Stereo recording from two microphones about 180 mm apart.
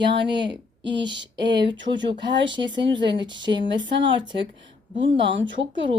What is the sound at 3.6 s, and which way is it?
Speech, 90° right.